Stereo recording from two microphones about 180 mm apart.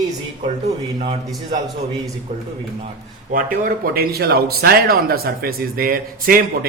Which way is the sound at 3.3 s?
50° right (ahead or behind).